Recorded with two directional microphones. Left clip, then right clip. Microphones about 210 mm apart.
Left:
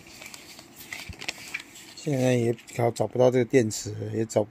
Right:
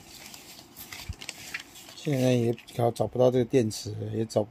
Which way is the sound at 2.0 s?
5° right (ahead or behind).